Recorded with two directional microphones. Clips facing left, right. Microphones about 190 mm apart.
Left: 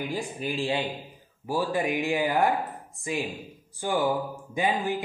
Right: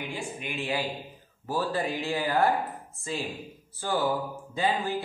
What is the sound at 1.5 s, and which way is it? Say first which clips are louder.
Speech: left 2 dB; 15° left (ahead or behind).